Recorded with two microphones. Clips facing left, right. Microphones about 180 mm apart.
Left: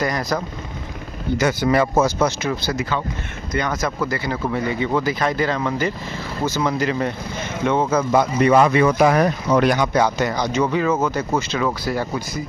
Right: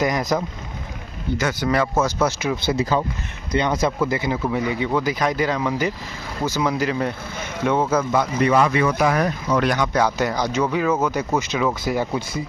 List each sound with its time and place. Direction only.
0.0 s speech: 20° right (ahead or behind)
1.4 s speech: 5° left (ahead or behind)
2.5 s speech: 25° right (ahead or behind)
4.1 s speech: 15° right (ahead or behind)
8.1 s speech: 30° left (ahead or behind)
9.6 s speech: 10° left (ahead or behind)
10.0 s speech: 5° right (ahead or behind)
11.1 s speech: 15° right (ahead or behind)